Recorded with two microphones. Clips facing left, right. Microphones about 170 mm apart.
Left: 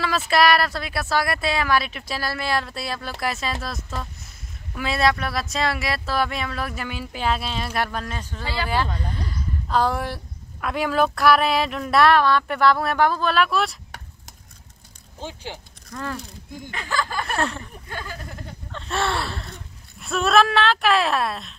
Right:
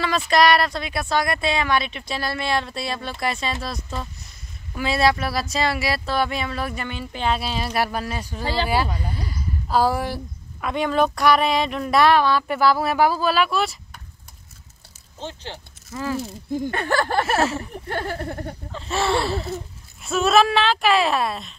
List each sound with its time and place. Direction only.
0.0 s speech: 5° left (ahead or behind)
15.1 s speech: 10° left (ahead or behind)
15.9 s speech: 5° right (ahead or behind)
16.7 s speech: 60° right (ahead or behind)
17.4 s speech: 5° right (ahead or behind)
17.8 s a sound: 60° right (ahead or behind)
18.7 s speech: centre (ahead or behind)